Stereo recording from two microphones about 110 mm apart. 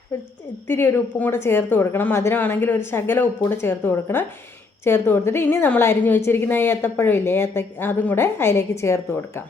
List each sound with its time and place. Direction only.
0.7 s a woman's voice: 20° left (ahead or behind)